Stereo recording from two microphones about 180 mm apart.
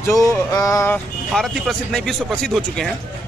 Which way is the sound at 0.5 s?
15° left (ahead or behind).